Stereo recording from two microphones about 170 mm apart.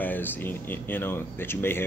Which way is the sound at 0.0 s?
10° left (ahead or behind).